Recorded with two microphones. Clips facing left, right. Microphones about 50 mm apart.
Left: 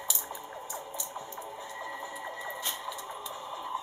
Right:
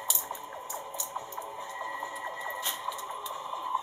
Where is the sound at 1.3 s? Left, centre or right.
Centre.